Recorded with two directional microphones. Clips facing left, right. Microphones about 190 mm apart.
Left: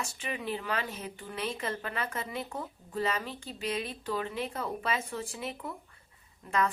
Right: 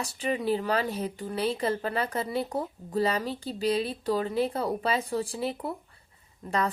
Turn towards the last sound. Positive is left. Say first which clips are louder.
# right 1 dB
turn(degrees=-35)  # may be behind; listen again after turning